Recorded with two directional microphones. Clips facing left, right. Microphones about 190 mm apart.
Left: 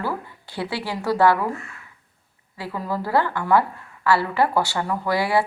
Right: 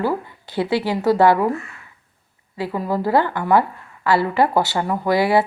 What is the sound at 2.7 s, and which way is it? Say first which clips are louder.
A woman's voice: right 4 dB; 15° right (ahead or behind).